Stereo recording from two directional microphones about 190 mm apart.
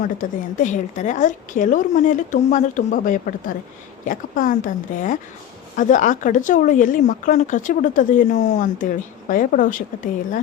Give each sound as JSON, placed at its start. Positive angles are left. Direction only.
{"t": 0.0, "sound": "a woman's voice", "side_deg": 40}